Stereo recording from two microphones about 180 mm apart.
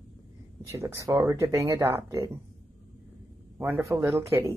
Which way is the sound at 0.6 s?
15° right (ahead or behind).